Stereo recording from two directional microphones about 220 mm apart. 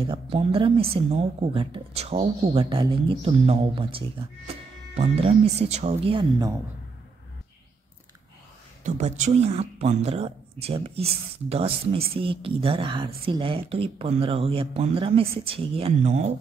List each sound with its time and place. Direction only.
0.0 s speech: 25° right (ahead or behind)
8.8 s speech: 35° right (ahead or behind)